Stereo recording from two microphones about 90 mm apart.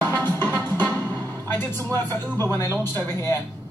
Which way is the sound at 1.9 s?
25° left (ahead or behind).